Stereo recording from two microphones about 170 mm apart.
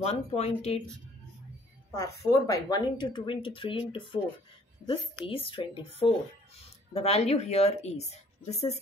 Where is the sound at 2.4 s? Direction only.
20° left (ahead or behind).